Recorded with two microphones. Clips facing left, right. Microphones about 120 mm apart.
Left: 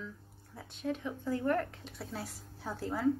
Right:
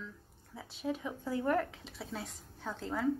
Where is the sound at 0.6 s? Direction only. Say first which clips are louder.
Even; 5° right (ahead or behind).